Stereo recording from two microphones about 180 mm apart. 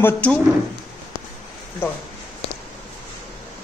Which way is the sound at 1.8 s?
15° left (ahead or behind).